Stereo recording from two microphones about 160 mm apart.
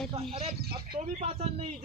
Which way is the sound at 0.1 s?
35° right (ahead or behind).